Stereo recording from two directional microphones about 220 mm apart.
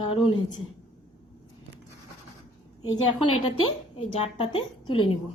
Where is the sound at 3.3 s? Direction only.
80° left.